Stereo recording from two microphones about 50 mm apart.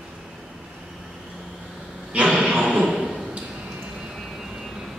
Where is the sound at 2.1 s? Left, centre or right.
Right.